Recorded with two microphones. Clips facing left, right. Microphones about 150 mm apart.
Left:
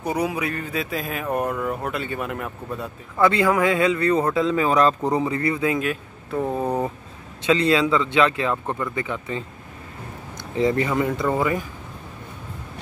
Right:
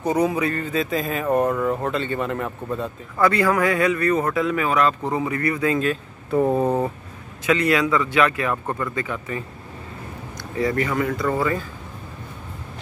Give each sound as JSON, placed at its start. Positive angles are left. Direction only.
{"t": 0.0, "sound": "speech", "side_deg": 10}
{"t": 3.2, "sound": "speech", "side_deg": 20}
{"t": 6.3, "sound": "speech", "side_deg": -10}
{"t": 7.4, "sound": "speech", "side_deg": 30}